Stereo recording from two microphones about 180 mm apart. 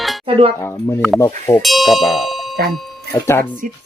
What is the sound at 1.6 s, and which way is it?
Ding, centre (ahead or behind).